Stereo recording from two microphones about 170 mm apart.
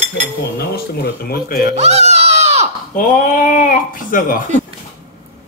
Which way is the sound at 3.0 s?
55° left (ahead or behind).